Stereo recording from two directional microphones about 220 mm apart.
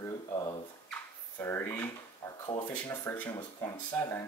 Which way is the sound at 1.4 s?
10° left (ahead or behind).